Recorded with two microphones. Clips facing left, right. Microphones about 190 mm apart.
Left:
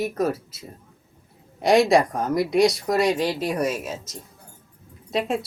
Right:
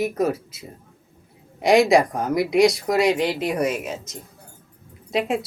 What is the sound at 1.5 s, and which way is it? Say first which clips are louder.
Speech: right 1 dB; 20° right (ahead or behind).